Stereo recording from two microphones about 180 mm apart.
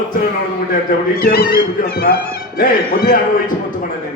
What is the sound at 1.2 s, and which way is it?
Speech, 55° left (ahead or behind).